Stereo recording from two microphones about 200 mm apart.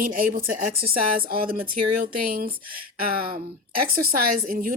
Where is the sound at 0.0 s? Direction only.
45° right (ahead or behind).